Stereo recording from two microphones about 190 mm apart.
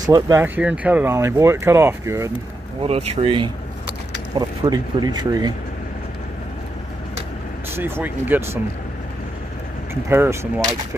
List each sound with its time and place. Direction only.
0.0 s speech: 15° right (ahead or behind)
2.8 s speech: 30° right (ahead or behind)
7.7 s speech: 10° right (ahead or behind)
10.0 s speech: 10° right (ahead or behind)